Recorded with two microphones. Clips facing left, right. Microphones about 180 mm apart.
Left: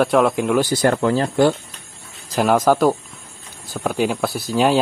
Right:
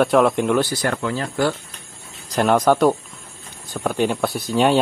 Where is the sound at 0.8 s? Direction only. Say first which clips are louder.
Left 6 dB; 35° left (ahead or behind).